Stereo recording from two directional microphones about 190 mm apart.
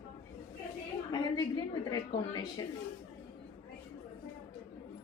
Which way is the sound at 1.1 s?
20° left (ahead or behind).